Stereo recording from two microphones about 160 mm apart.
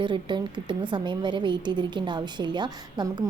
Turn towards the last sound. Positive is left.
turn(degrees=-25)  # may be behind; listen again after turning